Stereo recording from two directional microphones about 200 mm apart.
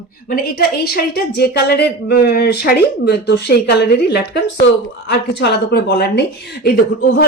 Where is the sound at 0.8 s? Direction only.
55° left (ahead or behind).